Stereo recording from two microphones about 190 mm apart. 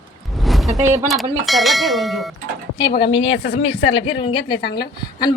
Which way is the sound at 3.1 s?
30° left (ahead or behind).